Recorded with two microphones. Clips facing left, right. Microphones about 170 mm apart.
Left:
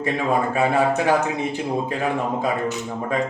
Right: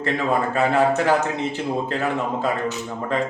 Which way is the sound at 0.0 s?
10° left (ahead or behind).